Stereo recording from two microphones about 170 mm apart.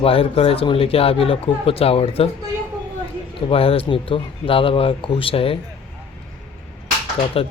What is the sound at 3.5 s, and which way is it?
Speech, 35° left (ahead or behind).